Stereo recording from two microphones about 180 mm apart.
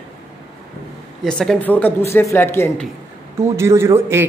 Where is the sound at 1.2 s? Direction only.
5° left (ahead or behind).